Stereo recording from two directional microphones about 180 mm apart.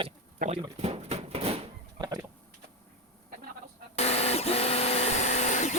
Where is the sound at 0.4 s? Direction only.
50° right (ahead or behind).